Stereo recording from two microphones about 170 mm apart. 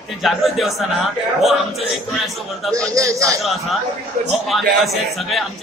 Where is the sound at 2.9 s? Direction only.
20° right (ahead or behind).